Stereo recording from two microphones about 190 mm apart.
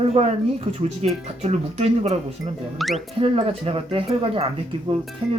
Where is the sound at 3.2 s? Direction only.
30° right (ahead or behind).